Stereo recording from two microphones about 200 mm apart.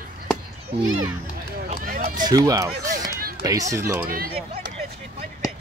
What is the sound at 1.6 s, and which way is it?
Run, 45° right (ahead or behind).